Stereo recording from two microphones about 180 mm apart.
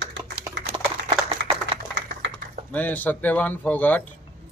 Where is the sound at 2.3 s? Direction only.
10° left (ahead or behind).